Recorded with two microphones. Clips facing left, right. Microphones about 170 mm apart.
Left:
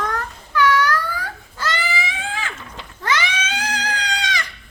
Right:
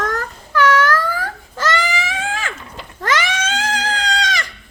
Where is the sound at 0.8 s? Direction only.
90° right.